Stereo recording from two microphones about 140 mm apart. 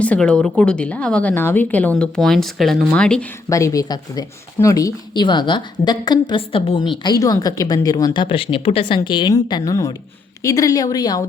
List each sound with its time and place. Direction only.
0.0 s speech: 10° left (ahead or behind)
3.5 s speech: 25° left (ahead or behind)